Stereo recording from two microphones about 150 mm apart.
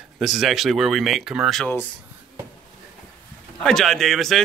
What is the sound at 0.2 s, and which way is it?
Speech, centre (ahead or behind).